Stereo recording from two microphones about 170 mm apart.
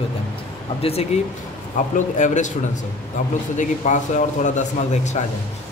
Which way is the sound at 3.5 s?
45° left (ahead or behind).